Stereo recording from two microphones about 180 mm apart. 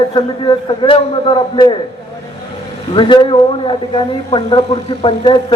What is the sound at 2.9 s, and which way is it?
A man's voice, 25° left (ahead or behind).